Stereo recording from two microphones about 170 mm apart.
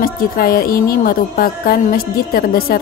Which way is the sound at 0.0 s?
60° left (ahead or behind).